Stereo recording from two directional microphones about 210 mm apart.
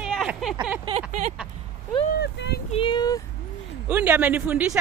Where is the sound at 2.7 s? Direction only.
25° left (ahead or behind).